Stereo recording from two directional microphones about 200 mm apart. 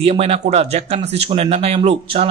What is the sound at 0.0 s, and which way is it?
Speech, 30° right (ahead or behind).